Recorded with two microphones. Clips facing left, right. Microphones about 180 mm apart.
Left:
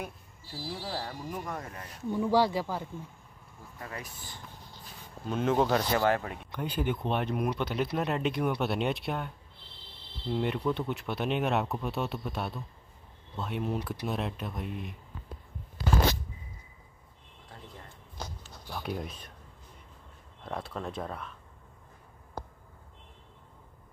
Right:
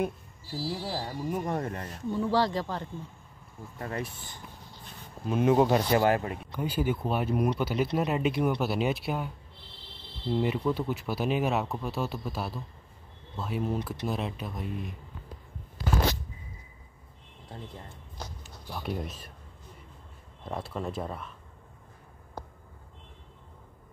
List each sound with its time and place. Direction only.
0.8 s speech: 15° right (ahead or behind); by 2.0 s 35° right (ahead or behind)
2.0 s speech: 10° left (ahead or behind)
3.8 s speech: 30° right (ahead or behind)
4.8 s speech: 5° right (ahead or behind)
6.2 s speech: centre (ahead or behind)
17.5 s a sound: 25° right (ahead or behind)
18.7 s speech: centre (ahead or behind)
20.4 s speech: centre (ahead or behind)